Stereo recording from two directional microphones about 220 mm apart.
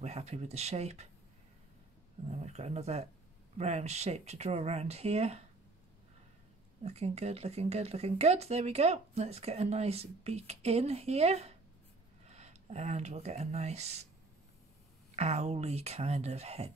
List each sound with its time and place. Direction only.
0.0 s speech: 30° right (ahead or behind)
2.2 s speech: 30° right (ahead or behind)
6.8 s speech: 30° right (ahead or behind)
15.1 s speech: 30° right (ahead or behind)